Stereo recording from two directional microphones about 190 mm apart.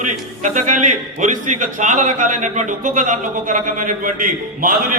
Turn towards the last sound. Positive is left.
turn(degrees=-45)  # may be behind; listen again after turning